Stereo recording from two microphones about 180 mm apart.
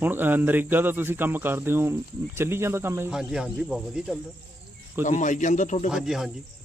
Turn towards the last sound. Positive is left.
turn(degrees=-5)  # may be behind; listen again after turning